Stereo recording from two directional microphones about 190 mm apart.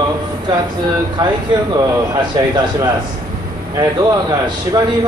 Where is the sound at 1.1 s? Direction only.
20° right (ahead or behind).